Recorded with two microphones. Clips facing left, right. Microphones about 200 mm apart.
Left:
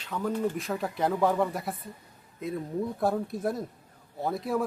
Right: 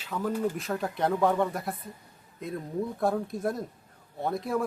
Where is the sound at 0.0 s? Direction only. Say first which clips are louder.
Even; centre (ahead or behind).